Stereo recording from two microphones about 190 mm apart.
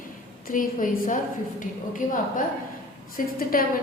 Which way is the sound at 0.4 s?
45° left (ahead or behind).